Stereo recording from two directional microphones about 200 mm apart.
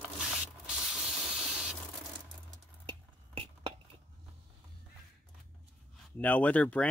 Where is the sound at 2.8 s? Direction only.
30° right (ahead or behind).